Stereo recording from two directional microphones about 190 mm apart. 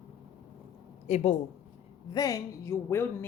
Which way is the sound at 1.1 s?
35° left (ahead or behind).